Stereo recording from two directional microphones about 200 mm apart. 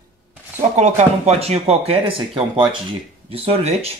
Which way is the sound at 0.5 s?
35° right (ahead or behind).